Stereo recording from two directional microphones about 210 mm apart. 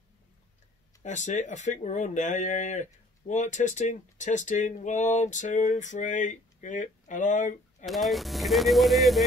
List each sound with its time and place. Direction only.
1.0 s speech: 35° left (ahead or behind)
7.8 s speech: centre (ahead or behind)